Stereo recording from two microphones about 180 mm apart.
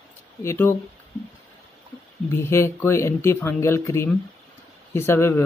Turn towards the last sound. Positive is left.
turn(degrees=15)  # may be behind; listen again after turning